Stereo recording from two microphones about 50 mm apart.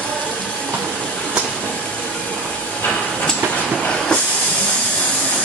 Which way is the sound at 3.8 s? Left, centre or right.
Centre.